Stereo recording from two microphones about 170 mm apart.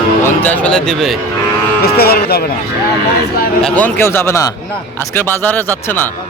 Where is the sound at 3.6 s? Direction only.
5° left (ahead or behind).